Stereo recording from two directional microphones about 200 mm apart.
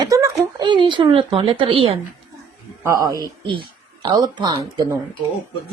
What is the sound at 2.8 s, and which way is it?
Speech, 15° right (ahead or behind).